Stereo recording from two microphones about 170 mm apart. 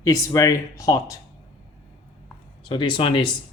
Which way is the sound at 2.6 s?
30° left (ahead or behind).